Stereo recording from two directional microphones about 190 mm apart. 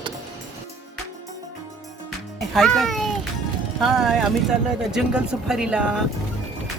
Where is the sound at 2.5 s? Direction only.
Centre (ahead or behind).